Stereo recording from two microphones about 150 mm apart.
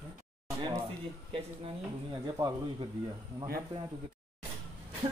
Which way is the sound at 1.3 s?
35° right (ahead or behind).